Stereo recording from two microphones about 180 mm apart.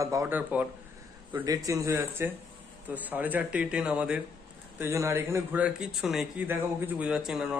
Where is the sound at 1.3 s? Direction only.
20° right (ahead or behind).